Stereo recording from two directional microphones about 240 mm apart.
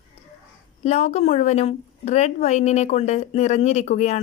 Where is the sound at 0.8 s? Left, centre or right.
Left.